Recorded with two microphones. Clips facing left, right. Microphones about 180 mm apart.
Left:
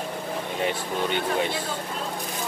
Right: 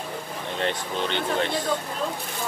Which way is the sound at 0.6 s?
10° left (ahead or behind).